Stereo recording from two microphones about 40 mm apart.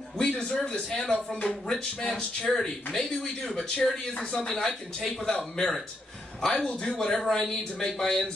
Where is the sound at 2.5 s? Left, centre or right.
Centre.